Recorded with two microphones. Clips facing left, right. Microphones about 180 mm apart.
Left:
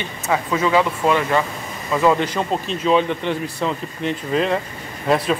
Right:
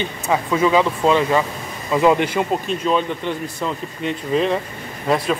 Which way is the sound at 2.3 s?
5° right (ahead or behind).